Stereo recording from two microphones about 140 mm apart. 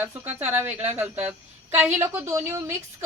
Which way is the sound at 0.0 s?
15° right (ahead or behind).